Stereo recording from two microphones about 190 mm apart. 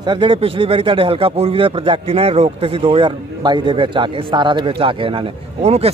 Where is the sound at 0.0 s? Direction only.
25° right (ahead or behind).